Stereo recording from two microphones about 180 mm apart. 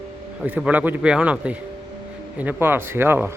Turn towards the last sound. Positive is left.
turn(degrees=-10)  # may be behind; listen again after turning